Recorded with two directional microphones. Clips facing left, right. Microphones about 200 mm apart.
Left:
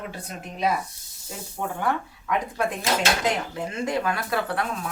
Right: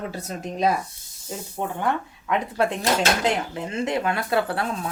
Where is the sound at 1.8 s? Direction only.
20° right (ahead or behind).